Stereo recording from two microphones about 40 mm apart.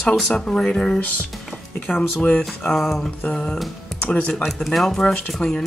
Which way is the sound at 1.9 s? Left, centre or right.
Left.